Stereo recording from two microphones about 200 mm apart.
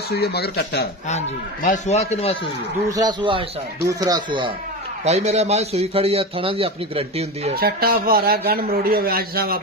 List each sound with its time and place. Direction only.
0.1 s speech: 55° left (ahead or behind)
1.0 s speech: 35° left (ahead or behind)
2.9 s a man's voice: 20° right (ahead or behind)
5.0 s a man's voice: 35° right (ahead or behind)
7.5 s speech: 50° right (ahead or behind)